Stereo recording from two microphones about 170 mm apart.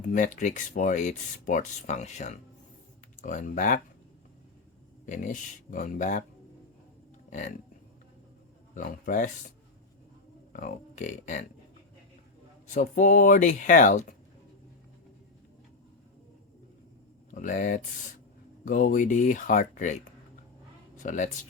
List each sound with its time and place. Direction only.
0.0 s speech: 50° left (ahead or behind)
5.0 s speech: 45° left (ahead or behind)
7.3 s speech: 45° left (ahead or behind)
8.7 s speech: 50° left (ahead or behind)
10.5 s speech: 50° left (ahead or behind)
12.6 s speech: 50° left (ahead or behind)
17.3 s speech: 50° left (ahead or behind)